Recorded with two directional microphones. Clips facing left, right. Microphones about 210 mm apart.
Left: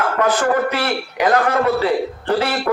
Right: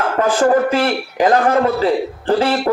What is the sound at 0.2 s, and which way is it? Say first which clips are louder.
A man's voice: right 4 dB; 30° right (ahead or behind).